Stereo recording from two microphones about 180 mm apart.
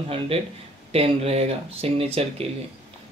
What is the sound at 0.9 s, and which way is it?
Speech, 35° right (ahead or behind).